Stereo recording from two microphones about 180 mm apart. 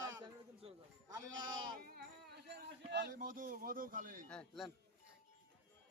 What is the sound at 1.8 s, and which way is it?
Speech, 55° right (ahead or behind).